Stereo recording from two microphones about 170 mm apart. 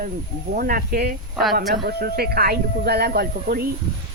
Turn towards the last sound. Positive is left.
turn(degrees=-65)  # may be behind; listen again after turning